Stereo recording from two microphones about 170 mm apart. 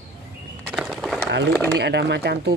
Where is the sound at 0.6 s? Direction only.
5° right (ahead or behind).